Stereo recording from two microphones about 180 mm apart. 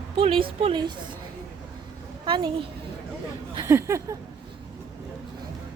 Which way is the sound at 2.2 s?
25° right (ahead or behind).